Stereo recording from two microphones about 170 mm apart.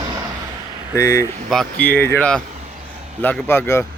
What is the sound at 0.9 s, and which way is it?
Speech, 20° left (ahead or behind).